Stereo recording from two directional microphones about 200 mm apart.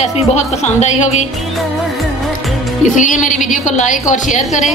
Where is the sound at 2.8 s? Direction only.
40° left (ahead or behind).